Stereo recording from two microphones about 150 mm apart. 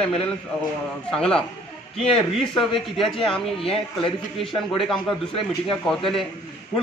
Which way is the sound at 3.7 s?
35° left (ahead or behind).